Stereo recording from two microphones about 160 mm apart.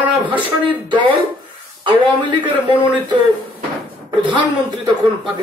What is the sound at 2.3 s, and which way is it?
Speech, 10° right (ahead or behind).